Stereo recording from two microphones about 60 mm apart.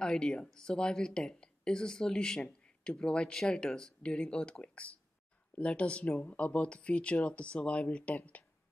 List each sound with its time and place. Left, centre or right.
0.0 s speech: centre